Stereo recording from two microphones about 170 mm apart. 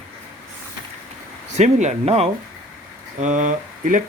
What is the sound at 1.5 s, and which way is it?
Speech, 40° right (ahead or behind).